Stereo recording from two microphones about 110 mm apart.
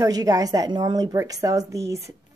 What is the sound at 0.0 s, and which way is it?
Speech, 35° right (ahead or behind).